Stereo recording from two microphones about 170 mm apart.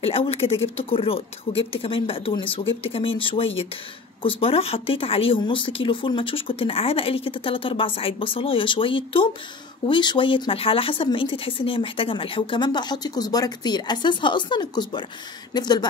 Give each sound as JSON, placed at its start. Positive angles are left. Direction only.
{"t": 0.0, "sound": "speech", "side_deg": 35}